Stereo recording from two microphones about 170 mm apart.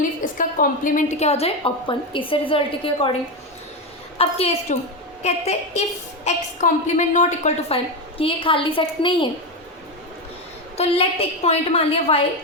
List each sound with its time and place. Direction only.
0.2 s a woman's voice: 50° left (ahead or behind); by 3.1 s 30° left (ahead or behind)
4.2 s a woman's voice: 35° left (ahead or behind)
8.2 s a woman's voice: 30° left (ahead or behind)
10.8 s a woman's voice: 35° left (ahead or behind)